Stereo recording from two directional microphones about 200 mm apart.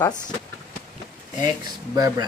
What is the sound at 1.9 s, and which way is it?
Speech, 20° right (ahead or behind).